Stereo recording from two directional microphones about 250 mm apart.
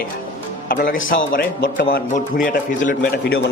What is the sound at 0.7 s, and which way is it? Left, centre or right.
A man's voice, left.